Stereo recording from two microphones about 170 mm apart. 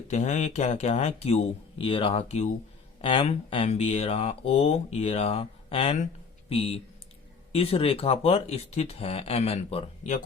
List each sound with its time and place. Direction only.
0.1 s speech: 45° left (ahead or behind)